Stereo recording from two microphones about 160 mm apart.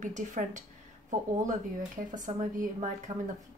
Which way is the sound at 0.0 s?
50° right (ahead or behind).